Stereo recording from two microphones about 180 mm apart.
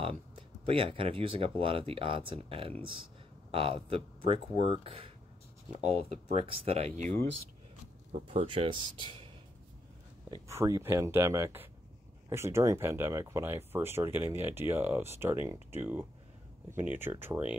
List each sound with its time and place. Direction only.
0.7 s speech: 30° right (ahead or behind)
8.1 s speech: 30° right (ahead or behind)
10.5 s speech: 15° right (ahead or behind)